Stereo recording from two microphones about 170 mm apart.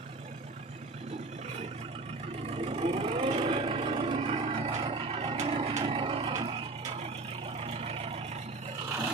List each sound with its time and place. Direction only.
2.5 s vehicle: 35° right (ahead or behind)
7.6 s vehicle: 35° right (ahead or behind)